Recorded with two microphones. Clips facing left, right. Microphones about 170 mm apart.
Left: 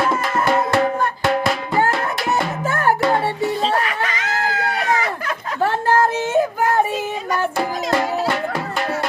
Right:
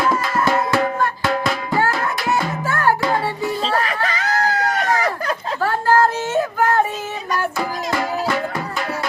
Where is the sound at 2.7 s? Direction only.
20° left (ahead or behind).